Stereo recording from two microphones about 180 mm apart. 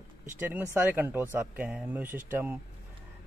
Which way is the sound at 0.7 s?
10° right (ahead or behind).